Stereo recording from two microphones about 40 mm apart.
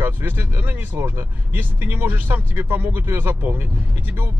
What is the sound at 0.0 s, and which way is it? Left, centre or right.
Speech, right.